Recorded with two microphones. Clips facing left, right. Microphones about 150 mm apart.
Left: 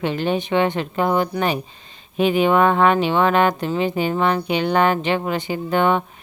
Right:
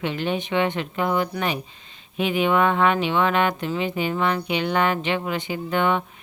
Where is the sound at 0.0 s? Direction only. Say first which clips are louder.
Left 4 dB; 35° left (ahead or behind).